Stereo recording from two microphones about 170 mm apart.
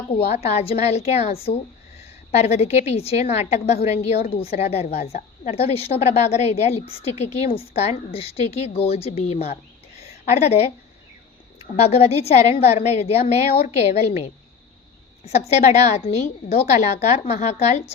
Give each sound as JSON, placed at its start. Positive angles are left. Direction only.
{"t": 0.3, "sound": "a woman's voice", "side_deg": 40}